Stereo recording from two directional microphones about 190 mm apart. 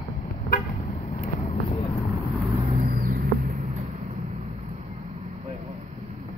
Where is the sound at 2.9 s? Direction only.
50° right (ahead or behind).